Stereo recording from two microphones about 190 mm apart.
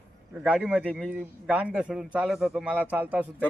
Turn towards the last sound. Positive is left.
turn(degrees=-5)  # may be behind; listen again after turning